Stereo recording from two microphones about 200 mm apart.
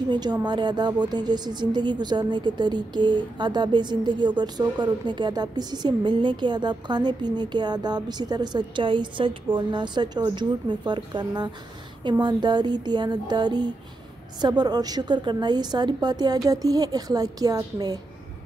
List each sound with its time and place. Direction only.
0.1 s speech: 20° right (ahead or behind)